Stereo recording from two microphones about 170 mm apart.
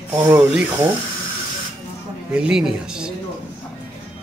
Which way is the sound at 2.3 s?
5° right (ahead or behind).